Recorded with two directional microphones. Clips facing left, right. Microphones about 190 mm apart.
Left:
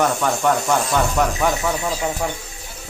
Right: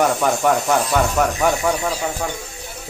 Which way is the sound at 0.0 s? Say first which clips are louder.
Right 2 dB; 5° right (ahead or behind).